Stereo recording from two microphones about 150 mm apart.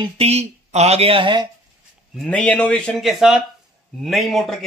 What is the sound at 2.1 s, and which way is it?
Speech, 5° left (ahead or behind).